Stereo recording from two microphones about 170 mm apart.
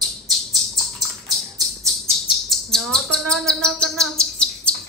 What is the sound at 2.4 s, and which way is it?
Chirp, centre (ahead or behind).